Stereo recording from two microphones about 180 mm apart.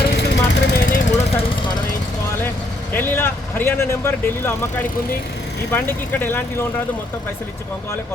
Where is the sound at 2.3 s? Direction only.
10° left (ahead or behind).